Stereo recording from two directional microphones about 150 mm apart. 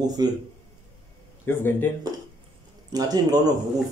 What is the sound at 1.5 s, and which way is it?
Speech, 15° left (ahead or behind).